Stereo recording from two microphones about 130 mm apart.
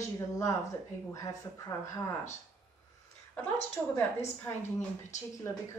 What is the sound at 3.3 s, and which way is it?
Speech, 15° left (ahead or behind).